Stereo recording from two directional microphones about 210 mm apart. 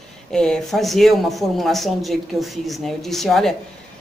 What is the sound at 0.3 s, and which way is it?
Speech, 5° left (ahead or behind).